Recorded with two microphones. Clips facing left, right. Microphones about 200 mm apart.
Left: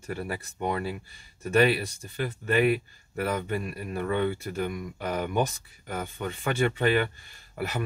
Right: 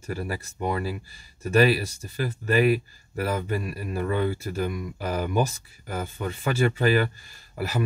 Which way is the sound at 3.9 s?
35° right (ahead or behind).